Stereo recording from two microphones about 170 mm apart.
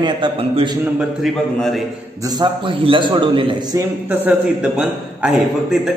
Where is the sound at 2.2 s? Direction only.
25° right (ahead or behind).